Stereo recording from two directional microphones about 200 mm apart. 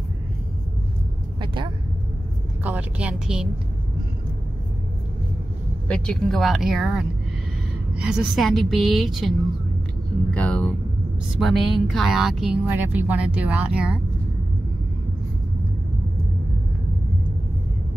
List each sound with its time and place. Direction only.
1.4 s vehicle: 25° right (ahead or behind)
2.6 s speech: 5° right (ahead or behind)
5.9 s speech: 5° left (ahead or behind)
10.3 s speech: 5° left (ahead or behind)